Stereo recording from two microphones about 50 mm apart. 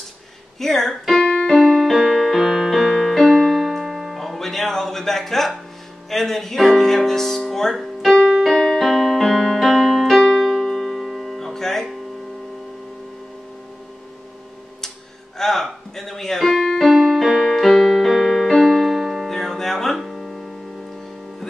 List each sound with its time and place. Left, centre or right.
0.6 s speech: centre
1.3 s music: centre
1.6 s music: centre
6.0 s speech: centre
8.3 s keyboard: centre
15.3 s keyboard: centre
18.1 s piano: centre